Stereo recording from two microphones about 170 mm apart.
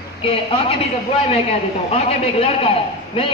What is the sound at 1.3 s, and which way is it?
A man's voice, 35° left (ahead or behind).